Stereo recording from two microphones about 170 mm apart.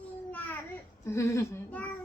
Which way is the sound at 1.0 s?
15° left (ahead or behind).